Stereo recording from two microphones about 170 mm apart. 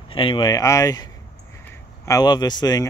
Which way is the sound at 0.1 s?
30° left (ahead or behind).